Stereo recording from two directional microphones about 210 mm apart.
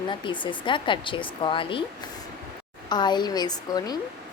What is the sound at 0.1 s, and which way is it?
A woman's voice, 20° left (ahead or behind).